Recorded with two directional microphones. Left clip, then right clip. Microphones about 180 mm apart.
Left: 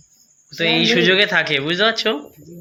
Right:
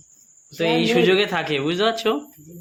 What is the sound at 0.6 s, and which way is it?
Speech, 15° right (ahead or behind).